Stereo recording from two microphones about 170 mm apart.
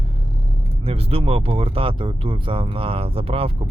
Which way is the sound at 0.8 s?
35° right (ahead or behind).